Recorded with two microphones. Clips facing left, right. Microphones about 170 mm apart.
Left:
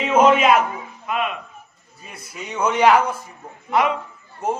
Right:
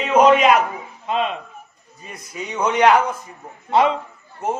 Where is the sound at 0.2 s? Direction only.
Centre (ahead or behind).